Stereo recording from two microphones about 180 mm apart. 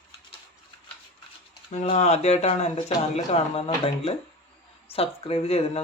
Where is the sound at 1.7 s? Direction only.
35° left (ahead or behind).